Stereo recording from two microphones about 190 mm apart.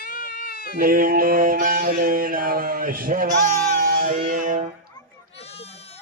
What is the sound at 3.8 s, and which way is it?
Music, 45° right (ahead or behind).